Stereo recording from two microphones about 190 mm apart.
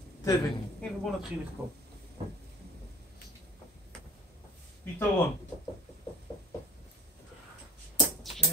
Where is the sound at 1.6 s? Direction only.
15° right (ahead or behind).